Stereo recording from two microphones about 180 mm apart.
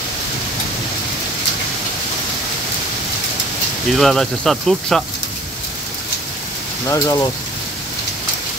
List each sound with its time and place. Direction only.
3.9 s speech: centre (ahead or behind)
6.9 s speech: 15° left (ahead or behind)